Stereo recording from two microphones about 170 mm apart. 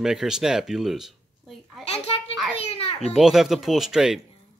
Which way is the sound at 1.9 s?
35° left (ahead or behind).